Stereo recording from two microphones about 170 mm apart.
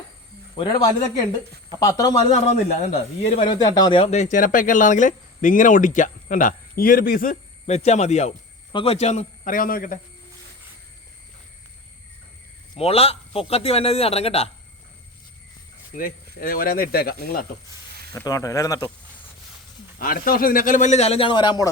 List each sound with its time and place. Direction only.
0.5 s speech: 25° left (ahead or behind)
2.3 s speech: 40° left (ahead or behind); by 7.3 s 55° left (ahead or behind)
7.7 s a man's voice: 40° left (ahead or behind); by 10.0 s 55° left (ahead or behind)
12.7 s a man's voice: 35° left (ahead or behind)
16.0 s speech: 55° left (ahead or behind)
18.1 s speech: 20° left (ahead or behind)
20.0 s speech: 55° left (ahead or behind); by 21.7 s 25° left (ahead or behind)